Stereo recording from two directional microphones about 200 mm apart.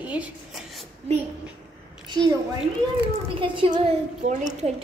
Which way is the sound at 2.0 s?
20° right (ahead or behind).